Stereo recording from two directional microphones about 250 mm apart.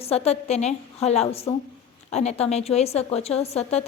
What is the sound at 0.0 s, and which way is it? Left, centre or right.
A woman's voice, left.